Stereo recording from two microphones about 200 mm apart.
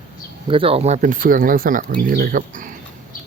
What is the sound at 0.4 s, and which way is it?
Speech, 25° right (ahead or behind).